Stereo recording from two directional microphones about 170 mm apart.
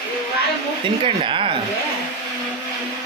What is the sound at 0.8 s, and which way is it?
Speech, 30° right (ahead or behind).